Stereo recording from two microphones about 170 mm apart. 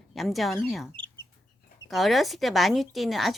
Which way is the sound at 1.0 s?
30° right (ahead or behind).